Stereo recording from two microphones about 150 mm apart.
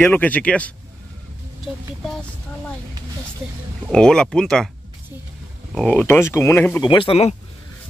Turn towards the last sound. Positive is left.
turn(degrees=40)  # may be behind; listen again after turning